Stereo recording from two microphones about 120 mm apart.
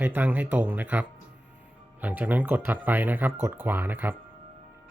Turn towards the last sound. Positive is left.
turn(degrees=-15)  # may be behind; listen again after turning